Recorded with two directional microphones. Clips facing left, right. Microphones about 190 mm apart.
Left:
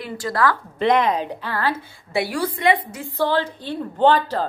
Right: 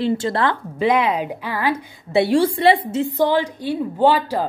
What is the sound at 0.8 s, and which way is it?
A woman's voice, 5° right (ahead or behind).